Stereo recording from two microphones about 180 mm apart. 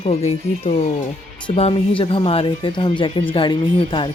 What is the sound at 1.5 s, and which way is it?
Speech, 35° left (ahead or behind).